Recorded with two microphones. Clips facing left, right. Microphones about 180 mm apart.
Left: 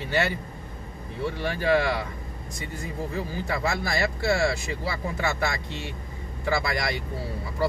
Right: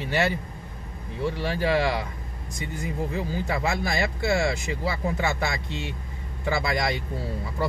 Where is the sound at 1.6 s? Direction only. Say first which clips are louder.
Left 1 dB; 20° right (ahead or behind).